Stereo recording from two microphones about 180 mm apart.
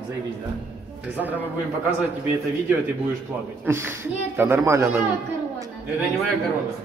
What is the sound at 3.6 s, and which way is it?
Speech, 15° right (ahead or behind).